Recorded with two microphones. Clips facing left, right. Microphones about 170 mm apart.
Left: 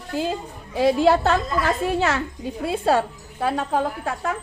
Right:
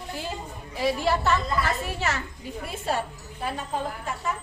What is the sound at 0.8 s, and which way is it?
A woman's voice, 65° left (ahead or behind).